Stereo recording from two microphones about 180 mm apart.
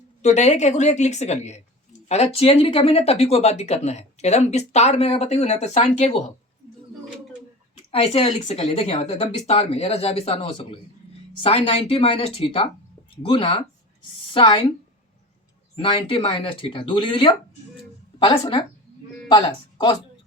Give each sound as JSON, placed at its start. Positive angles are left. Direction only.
{"t": 0.2, "sound": "speech", "side_deg": 40}
{"t": 7.9, "sound": "speech", "side_deg": 30}
{"t": 15.7, "sound": "speech", "side_deg": 30}